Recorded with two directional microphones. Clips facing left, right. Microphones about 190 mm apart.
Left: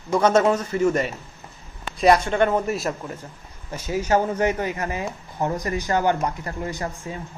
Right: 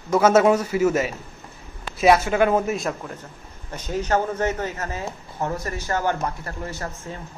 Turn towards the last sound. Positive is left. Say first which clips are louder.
# left 3 dB
turn(degrees=15)  # may be behind; listen again after turning